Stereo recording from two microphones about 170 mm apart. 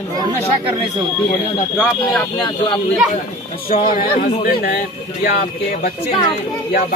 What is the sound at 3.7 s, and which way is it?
Speech, 55° left (ahead or behind).